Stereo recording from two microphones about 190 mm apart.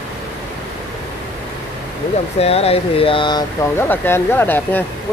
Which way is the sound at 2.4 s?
30° left (ahead or behind).